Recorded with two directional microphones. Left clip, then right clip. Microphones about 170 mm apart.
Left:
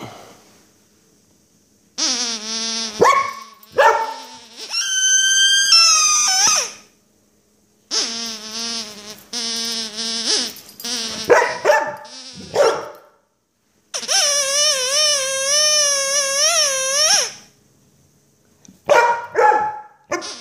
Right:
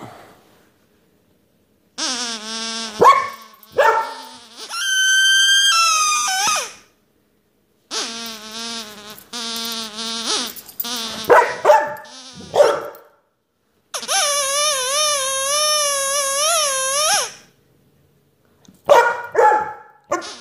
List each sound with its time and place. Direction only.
0.0 s a sound: 15° left (ahead or behind)
2.0 s mosquito: 15° left (ahead or behind)
3.2 s dog: 15° left (ahead or behind)
7.9 s insect: 10° left (ahead or behind)
11.6 s dog: 10° right (ahead or behind)
12.0 s dog: 15° left (ahead or behind)
13.9 s a sound: 10° left (ahead or behind)
18.6 s dog: 10° right (ahead or behind)